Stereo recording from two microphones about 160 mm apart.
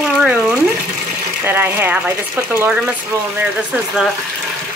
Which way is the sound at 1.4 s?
15° right (ahead or behind).